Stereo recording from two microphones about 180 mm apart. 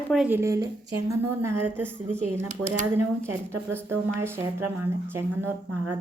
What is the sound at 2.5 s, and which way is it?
Speech, 40° right (ahead or behind).